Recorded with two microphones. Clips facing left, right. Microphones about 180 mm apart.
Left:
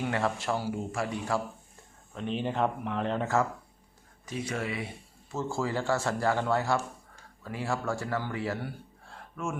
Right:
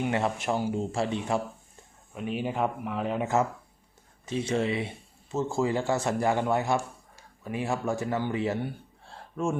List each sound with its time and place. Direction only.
0.0 s speech: 20° right (ahead or behind)
2.1 s speech: 10° right (ahead or behind)
4.3 s speech: 25° right (ahead or behind)